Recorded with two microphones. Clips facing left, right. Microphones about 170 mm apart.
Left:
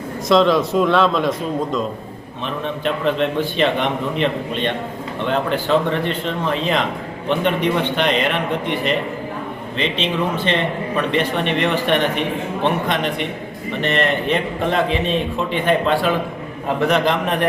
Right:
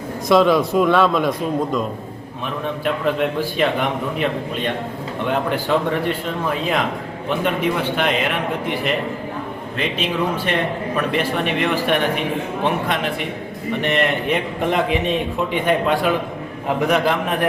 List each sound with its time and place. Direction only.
0.3 s a man's voice: 5° right (ahead or behind)
2.8 s a man's voice: 10° right (ahead or behind)